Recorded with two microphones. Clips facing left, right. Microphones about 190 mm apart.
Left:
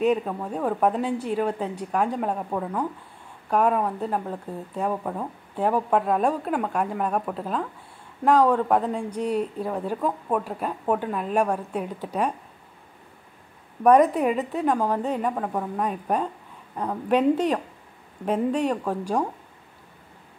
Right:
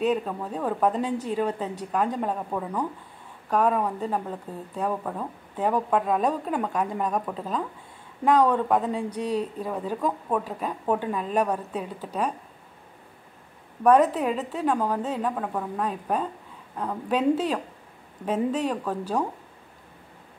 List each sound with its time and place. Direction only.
0.0 s speech: 10° left (ahead or behind)
13.8 s speech: 10° left (ahead or behind)